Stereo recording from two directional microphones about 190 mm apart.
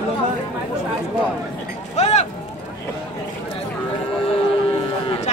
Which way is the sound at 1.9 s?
35° left (ahead or behind).